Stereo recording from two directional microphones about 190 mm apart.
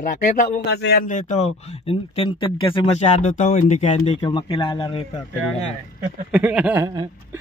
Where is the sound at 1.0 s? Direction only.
40° left (ahead or behind); by 5.2 s 25° left (ahead or behind).